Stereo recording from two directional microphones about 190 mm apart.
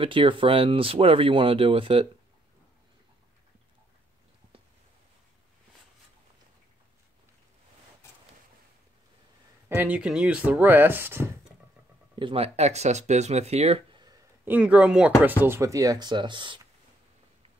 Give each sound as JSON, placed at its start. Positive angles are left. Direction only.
{"t": 0.0, "sound": "speech", "side_deg": -25}
{"t": 9.8, "sound": "speech", "side_deg": -5}
{"t": 12.2, "sound": "speech", "side_deg": -30}
{"t": 14.4, "sound": "speech", "side_deg": -10}